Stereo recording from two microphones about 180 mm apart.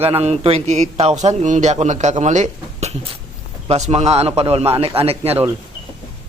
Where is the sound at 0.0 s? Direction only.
35° right (ahead or behind).